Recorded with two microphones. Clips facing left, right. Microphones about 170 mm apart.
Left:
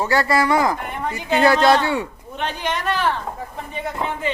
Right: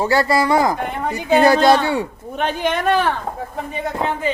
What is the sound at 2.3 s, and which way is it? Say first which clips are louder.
Speech: right 5 dB; 50° right (ahead or behind).